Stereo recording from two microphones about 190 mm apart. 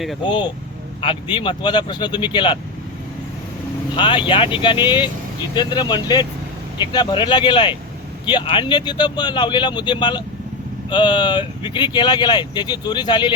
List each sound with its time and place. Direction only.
0.3 s speech: 25° left (ahead or behind)
3.9 s speech: 25° left (ahead or behind)